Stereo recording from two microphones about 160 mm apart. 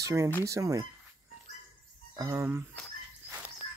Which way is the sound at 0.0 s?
20° right (ahead or behind).